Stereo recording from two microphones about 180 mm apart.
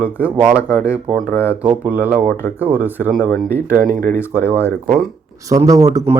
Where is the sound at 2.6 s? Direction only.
10° right (ahead or behind).